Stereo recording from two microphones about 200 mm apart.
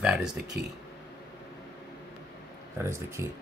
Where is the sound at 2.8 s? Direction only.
15° right (ahead or behind).